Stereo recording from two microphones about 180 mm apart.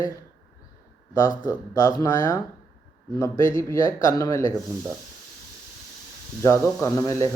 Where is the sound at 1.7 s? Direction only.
20° left (ahead or behind).